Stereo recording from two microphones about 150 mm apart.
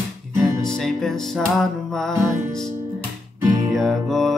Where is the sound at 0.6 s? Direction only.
5° left (ahead or behind).